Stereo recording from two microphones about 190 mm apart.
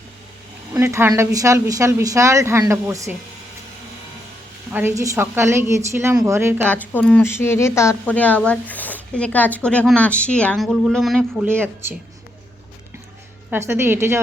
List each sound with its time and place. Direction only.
0.7 s speech: 10° right (ahead or behind)
4.7 s speech: 10° right (ahead or behind)
6.9 s speech: 5° left (ahead or behind)
13.5 s speech: 15° right (ahead or behind)